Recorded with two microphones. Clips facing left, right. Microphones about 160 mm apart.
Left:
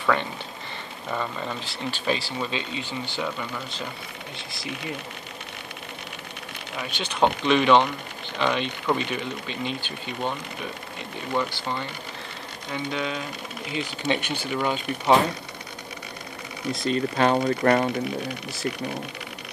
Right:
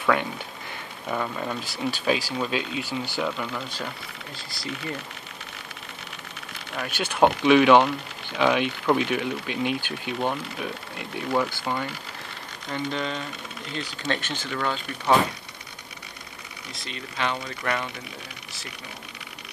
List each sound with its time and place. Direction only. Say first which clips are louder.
0.0 s speech: right 1 dB; 5° right (ahead or behind)
6.9 s speech: right 2 dB; 10° right (ahead or behind)
12.7 s speech: even; 5° left (ahead or behind)
16.7 s speech: left 12 dB; 45° left (ahead or behind)